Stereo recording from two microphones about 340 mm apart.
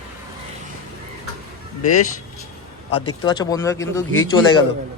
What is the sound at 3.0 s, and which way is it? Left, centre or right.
A man's voice, centre.